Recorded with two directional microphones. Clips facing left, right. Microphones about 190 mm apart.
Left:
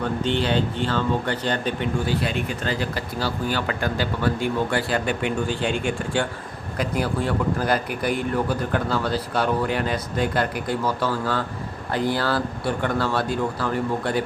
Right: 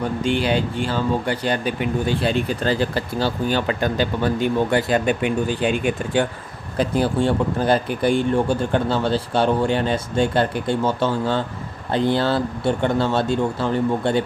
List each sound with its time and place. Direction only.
0.2 s speech: 10° right (ahead or behind)
2.0 s a man's voice: 30° right (ahead or behind)
6.7 s a man's voice: 30° right (ahead or behind)